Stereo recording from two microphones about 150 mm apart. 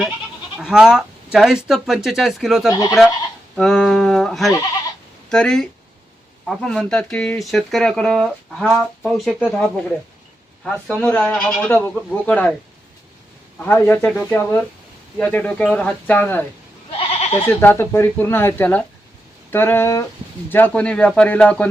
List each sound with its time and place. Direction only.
0.6 s speech: 5° right (ahead or behind)
9.4 s speech: 10° left (ahead or behind)
13.7 s speech: 15° left (ahead or behind)
17.0 s goat: 45° left (ahead or behind)
17.3 s speech: 15° left (ahead or behind)